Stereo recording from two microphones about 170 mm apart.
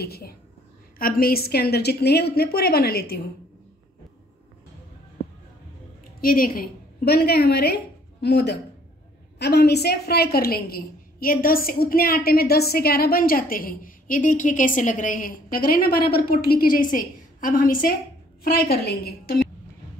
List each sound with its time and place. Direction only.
0.0 s a woman's voice: 65° left (ahead or behind)
6.2 s a woman's voice: 55° left (ahead or behind)
18.4 s a woman's voice: 65° left (ahead or behind)